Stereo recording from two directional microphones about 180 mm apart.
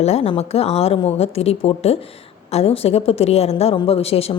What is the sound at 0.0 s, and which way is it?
A woman's voice, 35° left (ahead or behind).